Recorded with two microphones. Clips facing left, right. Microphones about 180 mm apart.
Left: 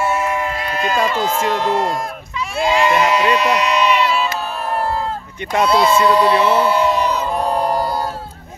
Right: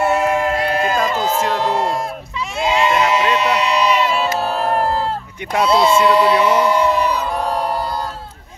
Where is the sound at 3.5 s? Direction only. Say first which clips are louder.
Even; 35° right (ahead or behind).